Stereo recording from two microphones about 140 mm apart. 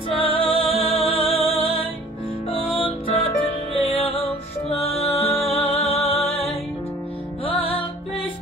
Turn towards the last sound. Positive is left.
turn(degrees=40)  # may be behind; listen again after turning